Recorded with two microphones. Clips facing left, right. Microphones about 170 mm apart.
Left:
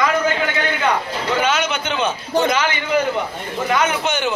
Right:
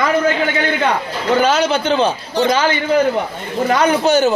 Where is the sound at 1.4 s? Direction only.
35° right (ahead or behind).